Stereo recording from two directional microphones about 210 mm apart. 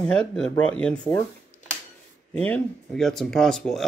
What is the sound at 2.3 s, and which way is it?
Speech, 5° left (ahead or behind).